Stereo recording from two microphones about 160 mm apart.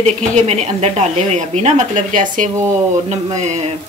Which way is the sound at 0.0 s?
40° right (ahead or behind).